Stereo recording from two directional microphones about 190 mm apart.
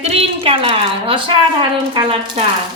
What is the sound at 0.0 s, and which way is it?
A woman's voice, 30° right (ahead or behind).